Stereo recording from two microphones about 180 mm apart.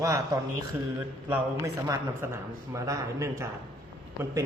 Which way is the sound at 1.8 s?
15° right (ahead or behind).